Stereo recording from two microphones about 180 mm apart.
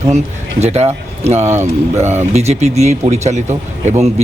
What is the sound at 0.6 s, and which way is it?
Speech, 35° right (ahead or behind).